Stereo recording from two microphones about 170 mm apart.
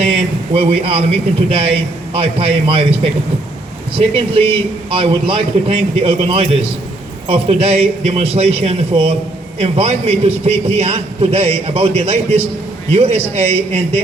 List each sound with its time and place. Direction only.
0.5 s a man's voice: 35° right (ahead or behind)